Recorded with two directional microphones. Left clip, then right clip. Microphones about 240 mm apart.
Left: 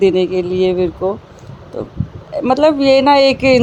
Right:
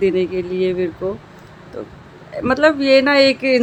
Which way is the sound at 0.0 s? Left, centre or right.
Centre.